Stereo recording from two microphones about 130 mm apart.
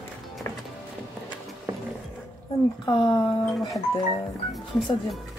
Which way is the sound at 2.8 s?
35° left (ahead or behind).